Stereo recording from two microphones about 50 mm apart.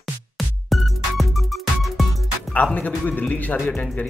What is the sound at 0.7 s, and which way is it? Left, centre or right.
Music, centre.